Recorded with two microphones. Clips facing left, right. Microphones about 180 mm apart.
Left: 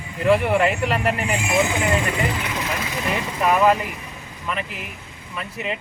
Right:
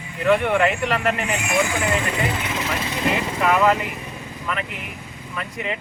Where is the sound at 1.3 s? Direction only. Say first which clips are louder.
Left 1 dB; 30° left (ahead or behind).